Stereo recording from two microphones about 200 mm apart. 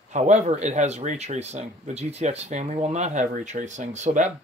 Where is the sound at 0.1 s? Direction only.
35° right (ahead or behind).